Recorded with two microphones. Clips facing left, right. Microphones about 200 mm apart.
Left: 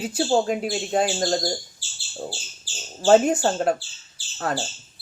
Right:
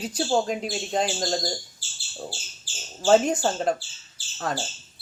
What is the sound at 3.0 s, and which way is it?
Speech, 5° left (ahead or behind).